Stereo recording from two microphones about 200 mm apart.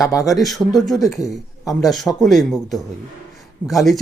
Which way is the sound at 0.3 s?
Centre (ahead or behind).